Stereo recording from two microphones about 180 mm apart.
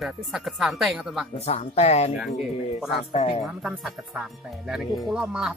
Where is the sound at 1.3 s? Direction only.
35° left (ahead or behind).